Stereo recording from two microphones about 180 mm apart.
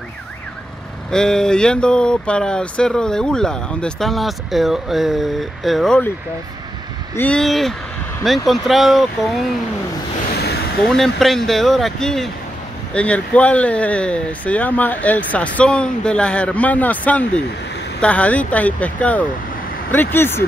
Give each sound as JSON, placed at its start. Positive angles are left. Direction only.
{"t": 1.1, "sound": "speech", "side_deg": 5}
{"t": 7.2, "sound": "speech", "side_deg": 5}
{"t": 10.4, "sound": "vehicle", "side_deg": 65}
{"t": 10.8, "sound": "speech", "side_deg": 0}